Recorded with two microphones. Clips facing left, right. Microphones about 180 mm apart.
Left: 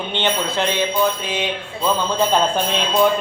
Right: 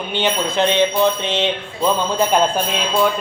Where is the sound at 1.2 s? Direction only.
25° right (ahead or behind).